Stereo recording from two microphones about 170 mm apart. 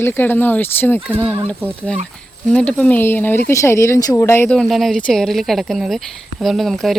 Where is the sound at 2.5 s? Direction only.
5° left (ahead or behind).